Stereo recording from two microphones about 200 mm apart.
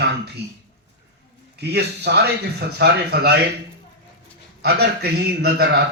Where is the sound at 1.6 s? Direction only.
55° right (ahead or behind).